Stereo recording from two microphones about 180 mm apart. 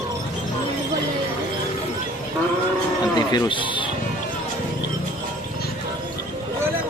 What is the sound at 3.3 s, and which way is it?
Speech, 25° left (ahead or behind).